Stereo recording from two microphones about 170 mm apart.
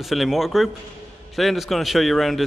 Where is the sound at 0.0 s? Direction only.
Centre (ahead or behind).